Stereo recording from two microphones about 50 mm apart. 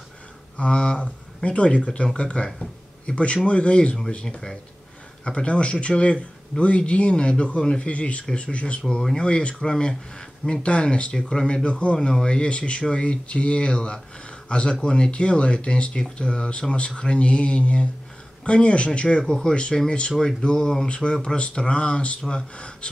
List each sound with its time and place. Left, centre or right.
0.6 s speech: left
8.8 s speech: centre